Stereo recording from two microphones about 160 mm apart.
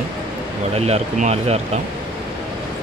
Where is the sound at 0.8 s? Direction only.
45° right (ahead or behind).